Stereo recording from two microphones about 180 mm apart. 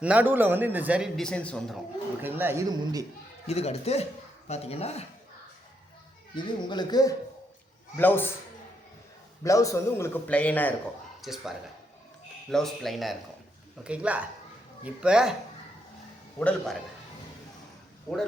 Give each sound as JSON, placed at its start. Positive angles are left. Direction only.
{"t": 0.0, "sound": "a man's voice", "side_deg": -10}
{"t": 2.2, "sound": "a man's voice", "side_deg": -10}
{"t": 3.4, "sound": "speech", "side_deg": 35}
{"t": 6.3, "sound": "a man's voice", "side_deg": 25}
{"t": 9.4, "sound": "a man's voice", "side_deg": 15}
{"t": 11.2, "sound": "a man's voice", "side_deg": 0}
{"t": 16.4, "sound": "a man's voice", "side_deg": 5}